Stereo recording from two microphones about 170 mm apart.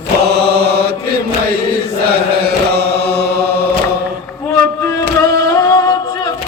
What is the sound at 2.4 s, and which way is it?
Chant, 70° right (ahead or behind).